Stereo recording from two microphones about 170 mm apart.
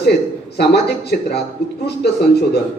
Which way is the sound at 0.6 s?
75° left (ahead or behind).